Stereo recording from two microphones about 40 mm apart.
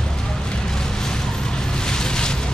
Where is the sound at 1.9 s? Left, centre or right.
Centre.